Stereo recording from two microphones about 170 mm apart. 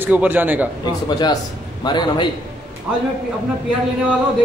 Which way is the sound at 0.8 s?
25° left (ahead or behind).